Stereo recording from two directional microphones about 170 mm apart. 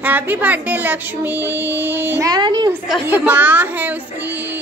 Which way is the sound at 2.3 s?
25° right (ahead or behind).